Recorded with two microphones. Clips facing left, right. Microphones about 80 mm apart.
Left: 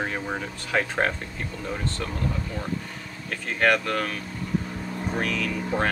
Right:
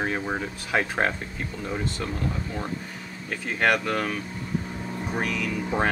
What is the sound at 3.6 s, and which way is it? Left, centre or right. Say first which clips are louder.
Speech: left 1 dB; centre.